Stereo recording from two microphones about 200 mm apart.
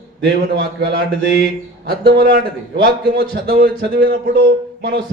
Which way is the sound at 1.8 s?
50° right (ahead or behind).